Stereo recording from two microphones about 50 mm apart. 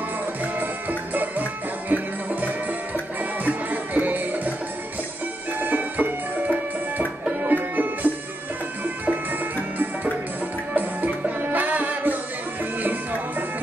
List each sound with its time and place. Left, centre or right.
0.4 s music: right
3.2 s music: right
5.6 s music: right